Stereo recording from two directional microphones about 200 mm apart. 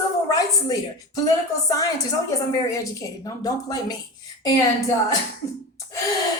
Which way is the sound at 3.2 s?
20° left (ahead or behind).